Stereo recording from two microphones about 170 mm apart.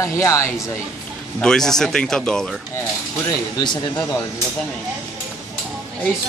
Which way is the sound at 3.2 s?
25° left (ahead or behind).